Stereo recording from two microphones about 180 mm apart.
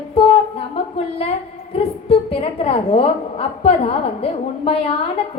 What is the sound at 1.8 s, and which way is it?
A woman's voice, 30° left (ahead or behind).